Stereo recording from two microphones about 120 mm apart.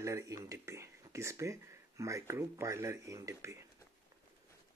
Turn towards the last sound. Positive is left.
turn(degrees=-25)  # may be behind; listen again after turning